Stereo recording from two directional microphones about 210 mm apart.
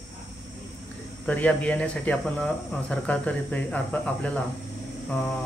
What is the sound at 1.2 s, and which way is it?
Speech, 5° left (ahead or behind).